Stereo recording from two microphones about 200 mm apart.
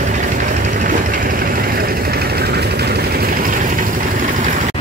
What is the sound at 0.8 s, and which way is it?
Train, 45° right (ahead or behind).